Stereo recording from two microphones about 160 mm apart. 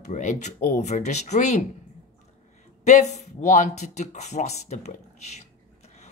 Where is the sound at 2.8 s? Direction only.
45° left (ahead or behind).